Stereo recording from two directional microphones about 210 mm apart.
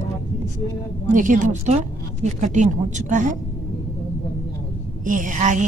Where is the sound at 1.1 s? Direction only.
40° right (ahead or behind).